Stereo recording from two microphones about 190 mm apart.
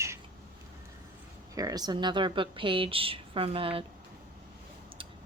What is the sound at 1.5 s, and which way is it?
A woman's voice, 20° right (ahead or behind).